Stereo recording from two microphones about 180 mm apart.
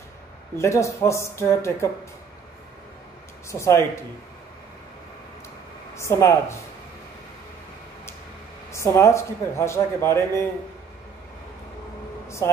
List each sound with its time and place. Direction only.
0.6 s a man's voice: 15° left (ahead or behind)
3.4 s a man's voice: 15° left (ahead or behind)
5.9 s a man's voice: 15° left (ahead or behind)
8.7 s a man's voice: 15° left (ahead or behind)